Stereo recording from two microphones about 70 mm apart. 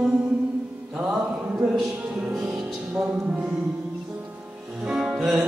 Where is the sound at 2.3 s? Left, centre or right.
Centre.